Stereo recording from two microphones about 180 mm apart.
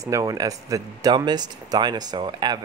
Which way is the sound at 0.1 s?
20° right (ahead or behind).